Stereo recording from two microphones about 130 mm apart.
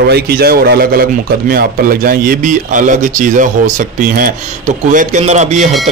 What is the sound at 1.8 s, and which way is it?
A man's voice, 90° right.